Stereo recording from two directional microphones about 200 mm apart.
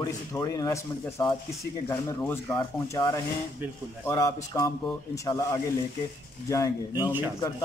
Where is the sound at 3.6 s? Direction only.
10° right (ahead or behind).